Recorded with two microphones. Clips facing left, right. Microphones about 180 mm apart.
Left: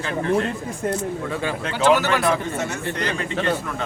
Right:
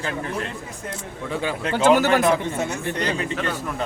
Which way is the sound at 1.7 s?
50° right (ahead or behind).